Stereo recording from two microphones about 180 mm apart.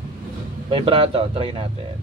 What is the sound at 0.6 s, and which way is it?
Speech, 30° right (ahead or behind).